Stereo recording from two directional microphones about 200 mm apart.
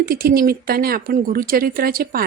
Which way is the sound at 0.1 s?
50° right (ahead or behind).